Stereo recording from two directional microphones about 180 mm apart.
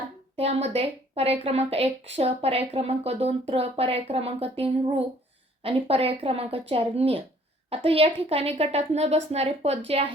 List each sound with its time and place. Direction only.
0.3 s a woman's voice: 35° right (ahead or behind)